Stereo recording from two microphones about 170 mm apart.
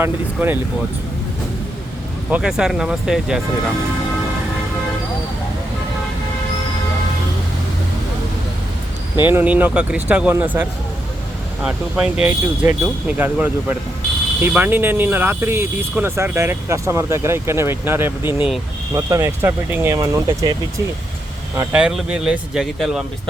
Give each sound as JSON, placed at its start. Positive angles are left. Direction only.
{"t": 0.0, "sound": "speech", "side_deg": -10}
{"t": 2.3, "sound": "speech", "side_deg": -5}
{"t": 9.2, "sound": "speech", "side_deg": -10}
{"t": 21.5, "sound": "speech", "side_deg": -10}